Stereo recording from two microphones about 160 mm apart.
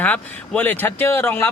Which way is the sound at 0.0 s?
10° left (ahead or behind).